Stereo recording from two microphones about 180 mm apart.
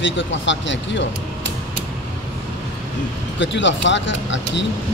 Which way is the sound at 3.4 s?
90° left.